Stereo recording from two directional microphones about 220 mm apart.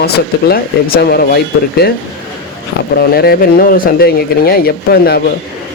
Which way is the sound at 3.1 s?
45° left (ahead or behind).